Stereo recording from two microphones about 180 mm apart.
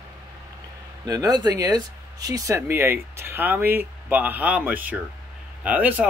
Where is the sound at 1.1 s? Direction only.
20° right (ahead or behind).